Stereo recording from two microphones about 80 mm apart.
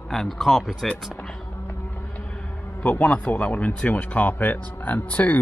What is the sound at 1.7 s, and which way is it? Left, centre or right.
Speech, left.